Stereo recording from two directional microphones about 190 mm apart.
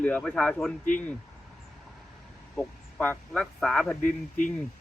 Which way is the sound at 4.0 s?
45° left (ahead or behind).